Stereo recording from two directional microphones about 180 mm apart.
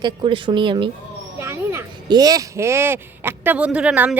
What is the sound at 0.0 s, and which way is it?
Speech, 25° right (ahead or behind).